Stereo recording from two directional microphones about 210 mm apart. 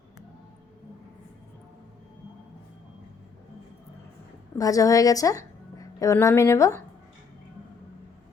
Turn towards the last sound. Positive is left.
turn(degrees=15)  # may be behind; listen again after turning